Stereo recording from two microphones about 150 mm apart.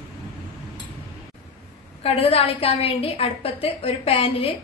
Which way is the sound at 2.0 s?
40° left (ahead or behind).